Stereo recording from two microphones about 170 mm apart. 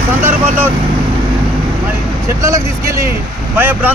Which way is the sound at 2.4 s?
20° right (ahead or behind).